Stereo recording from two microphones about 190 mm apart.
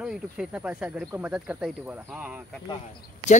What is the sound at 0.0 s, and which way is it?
Speech, 5° right (ahead or behind).